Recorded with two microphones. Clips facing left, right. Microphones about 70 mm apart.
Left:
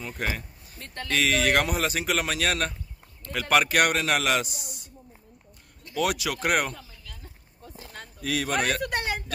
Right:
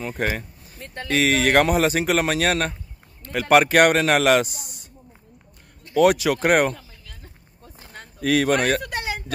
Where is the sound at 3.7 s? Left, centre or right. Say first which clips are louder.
Right 7 dB; right.